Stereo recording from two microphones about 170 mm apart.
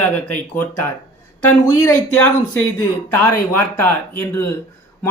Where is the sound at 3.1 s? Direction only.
10° left (ahead or behind).